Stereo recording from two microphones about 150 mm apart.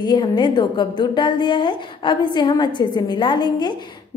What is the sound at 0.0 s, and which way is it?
A woman's voice, 30° left (ahead or behind).